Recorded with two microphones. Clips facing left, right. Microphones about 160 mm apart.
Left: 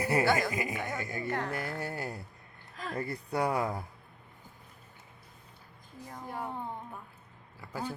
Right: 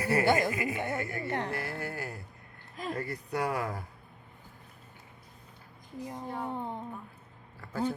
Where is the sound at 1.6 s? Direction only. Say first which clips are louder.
Left 1 dB; 20° left (ahead or behind).